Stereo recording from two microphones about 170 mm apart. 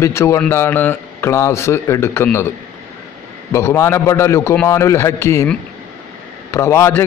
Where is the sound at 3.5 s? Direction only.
15° left (ahead or behind).